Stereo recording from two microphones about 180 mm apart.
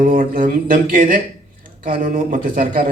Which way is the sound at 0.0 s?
50° right (ahead or behind).